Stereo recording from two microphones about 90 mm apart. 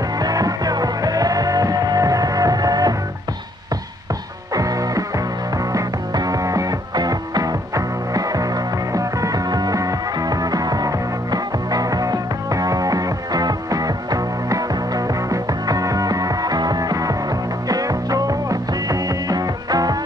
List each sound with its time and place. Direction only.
0.2 s music: 45° right (ahead or behind)
4.6 s music: 40° right (ahead or behind)